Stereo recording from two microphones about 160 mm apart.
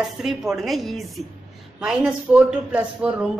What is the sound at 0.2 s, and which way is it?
A woman's voice, centre (ahead or behind).